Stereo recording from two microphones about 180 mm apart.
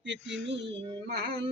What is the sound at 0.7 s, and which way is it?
Female singing, 30° right (ahead or behind).